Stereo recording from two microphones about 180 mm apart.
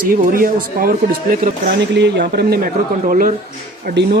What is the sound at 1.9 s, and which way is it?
Speech, 70° right (ahead or behind).